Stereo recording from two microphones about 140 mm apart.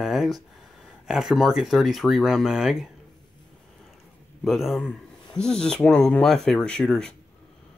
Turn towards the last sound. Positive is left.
turn(degrees=5)  # may be behind; listen again after turning